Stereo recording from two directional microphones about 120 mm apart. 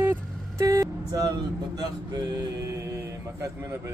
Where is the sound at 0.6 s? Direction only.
25° right (ahead or behind).